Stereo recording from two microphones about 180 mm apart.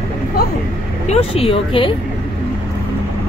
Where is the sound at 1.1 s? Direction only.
35° left (ahead or behind).